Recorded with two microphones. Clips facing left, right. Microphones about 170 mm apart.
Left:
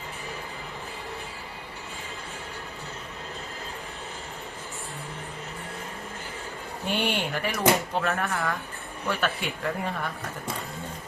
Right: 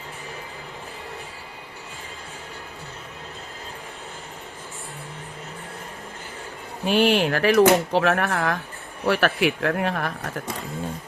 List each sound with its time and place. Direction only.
6.8 s speech: 90° right